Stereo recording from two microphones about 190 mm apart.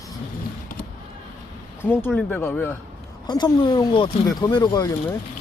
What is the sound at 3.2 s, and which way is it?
Speech, 25° left (ahead or behind).